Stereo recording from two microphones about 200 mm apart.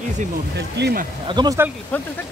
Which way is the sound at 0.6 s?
55° right (ahead or behind).